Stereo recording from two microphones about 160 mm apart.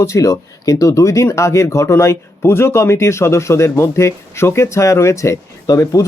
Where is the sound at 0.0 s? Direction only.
20° left (ahead or behind).